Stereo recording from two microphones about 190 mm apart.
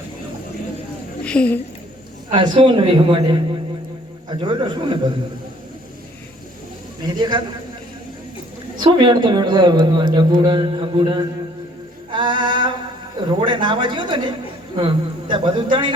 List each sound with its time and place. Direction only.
1.2 s a woman's voice: 5° left (ahead or behind)
2.3 s speech: 25° right (ahead or behind)
7.0 s speech: 25° right (ahead or behind)
8.8 s speech: 25° right (ahead or behind)
12.1 s music: 25° right (ahead or behind)
13.4 s speech: 25° right (ahead or behind)